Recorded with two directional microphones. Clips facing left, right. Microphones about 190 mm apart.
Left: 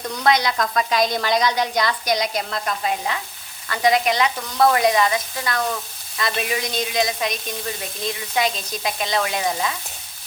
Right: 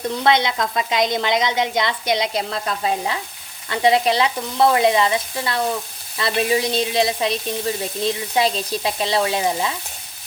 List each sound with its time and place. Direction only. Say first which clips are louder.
0.1 s a woman's voice: even; 25° right (ahead or behind)
8.0 s sizzle: right 3 dB; 30° right (ahead or behind)